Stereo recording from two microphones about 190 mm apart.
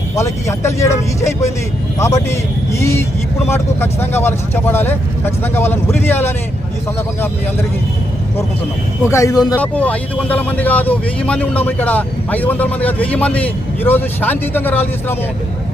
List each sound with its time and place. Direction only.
0.2 s speech: 15° left (ahead or behind)
9.0 s speech: 15° left (ahead or behind)
9.6 s speech: 5° left (ahead or behind)